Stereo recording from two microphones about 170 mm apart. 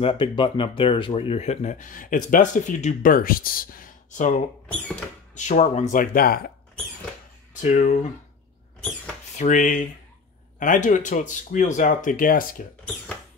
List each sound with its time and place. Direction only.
0.0 s speech: 30° left (ahead or behind); by 6.5 s 60° left (ahead or behind)
7.6 s speech: 45° left (ahead or behind)
9.4 s speech: 50° left (ahead or behind)